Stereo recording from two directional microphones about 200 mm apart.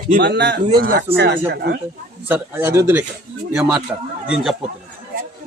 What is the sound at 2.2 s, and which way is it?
A man's voice, 10° right (ahead or behind).